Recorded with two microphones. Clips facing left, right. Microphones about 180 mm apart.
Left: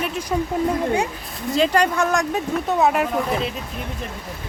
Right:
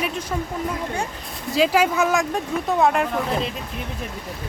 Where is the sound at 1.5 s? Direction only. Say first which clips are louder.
Even; 5° right (ahead or behind).